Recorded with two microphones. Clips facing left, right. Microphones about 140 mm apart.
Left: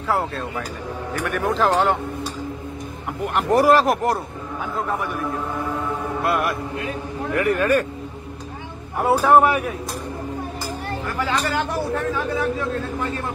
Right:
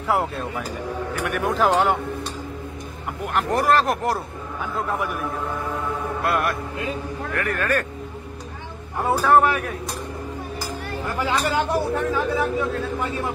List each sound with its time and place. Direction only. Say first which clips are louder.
0.1 s speech: even; 15° right (ahead or behind)
1.2 s speech: left 1 dB; 5° right (ahead or behind)
3.3 s speech: left 4 dB; 5° left (ahead or behind)
6.2 s speech: left 1 dB; centre (ahead or behind)
8.9 s speech: left 2 dB; 15° left (ahead or behind)
11.1 s speech: right 1 dB; 15° right (ahead or behind)